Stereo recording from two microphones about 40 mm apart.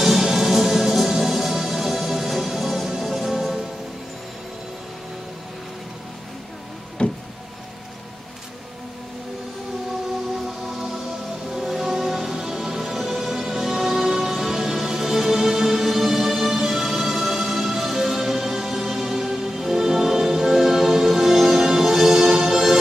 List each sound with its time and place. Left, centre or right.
0.0 s music: centre
7.0 s a sound: left
11.7 s music: centre